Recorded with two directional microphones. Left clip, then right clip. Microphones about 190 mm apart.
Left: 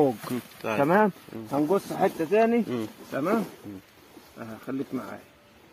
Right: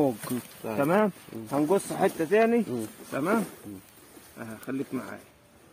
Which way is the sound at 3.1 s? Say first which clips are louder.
Even; 5° right (ahead or behind).